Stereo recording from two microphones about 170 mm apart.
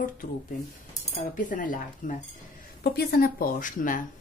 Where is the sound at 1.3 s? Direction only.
50° left (ahead or behind).